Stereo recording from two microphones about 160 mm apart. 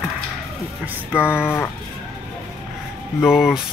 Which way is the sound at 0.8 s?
10° right (ahead or behind).